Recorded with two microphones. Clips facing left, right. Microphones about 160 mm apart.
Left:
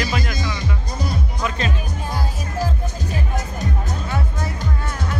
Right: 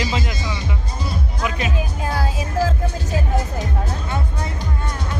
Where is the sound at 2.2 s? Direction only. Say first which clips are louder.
Right 4 dB; 90° right.